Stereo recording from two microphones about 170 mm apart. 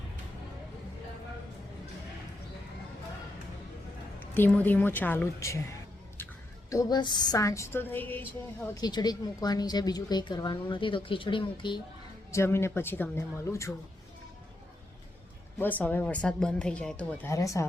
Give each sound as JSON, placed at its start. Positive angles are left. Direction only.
{"t": 4.4, "sound": "speech", "side_deg": 10}
{"t": 6.7, "sound": "a woman's voice", "side_deg": 20}
{"t": 8.7, "sound": "a woman's voice", "side_deg": 25}
{"t": 12.3, "sound": "speech", "side_deg": 15}
{"t": 15.5, "sound": "speech", "side_deg": 10}